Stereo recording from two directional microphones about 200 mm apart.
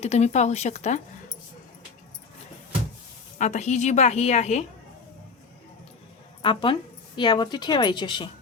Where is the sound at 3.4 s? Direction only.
35° left (ahead or behind).